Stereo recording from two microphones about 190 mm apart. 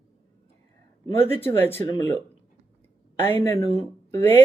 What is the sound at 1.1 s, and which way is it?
Speech, 10° left (ahead or behind).